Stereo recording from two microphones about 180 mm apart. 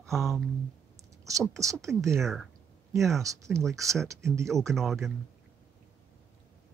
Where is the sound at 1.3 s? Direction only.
20° right (ahead or behind).